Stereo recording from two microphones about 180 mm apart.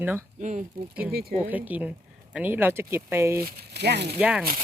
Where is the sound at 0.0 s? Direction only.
10° right (ahead or behind).